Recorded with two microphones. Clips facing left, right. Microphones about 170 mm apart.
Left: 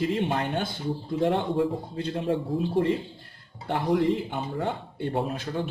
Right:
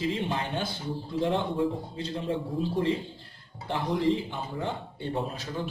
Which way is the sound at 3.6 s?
50° left (ahead or behind).